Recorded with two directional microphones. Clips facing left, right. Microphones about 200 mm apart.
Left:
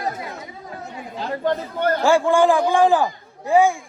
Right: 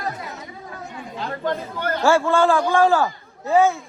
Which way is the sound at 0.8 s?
40° left (ahead or behind).